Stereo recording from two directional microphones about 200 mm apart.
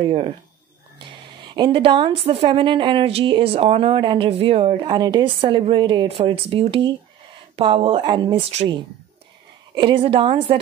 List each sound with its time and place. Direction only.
0.0 s a woman's voice: 30° right (ahead or behind)